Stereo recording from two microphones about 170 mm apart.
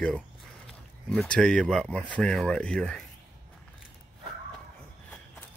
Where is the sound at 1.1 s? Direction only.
5° left (ahead or behind).